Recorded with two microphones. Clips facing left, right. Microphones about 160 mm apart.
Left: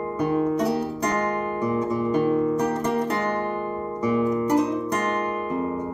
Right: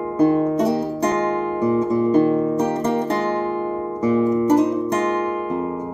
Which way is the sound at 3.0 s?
25° right (ahead or behind).